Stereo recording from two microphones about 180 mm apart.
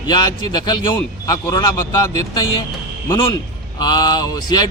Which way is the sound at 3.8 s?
25° left (ahead or behind).